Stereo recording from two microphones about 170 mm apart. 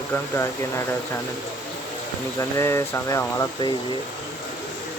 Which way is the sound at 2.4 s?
15° left (ahead or behind).